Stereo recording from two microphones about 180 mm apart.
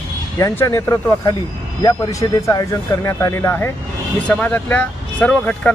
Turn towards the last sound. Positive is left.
turn(degrees=10)  # may be behind; listen again after turning